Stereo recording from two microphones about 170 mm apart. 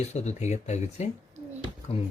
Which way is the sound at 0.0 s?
40° left (ahead or behind).